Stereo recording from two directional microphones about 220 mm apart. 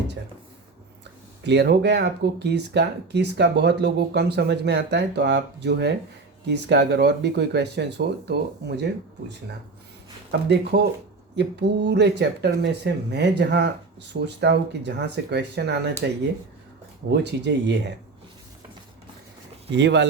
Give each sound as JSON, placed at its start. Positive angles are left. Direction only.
{"t": 1.5, "sound": "speech", "side_deg": -50}
{"t": 10.5, "sound": "speech", "side_deg": -45}
{"t": 17.1, "sound": "speech", "side_deg": -50}
{"t": 19.7, "sound": "speech", "side_deg": -55}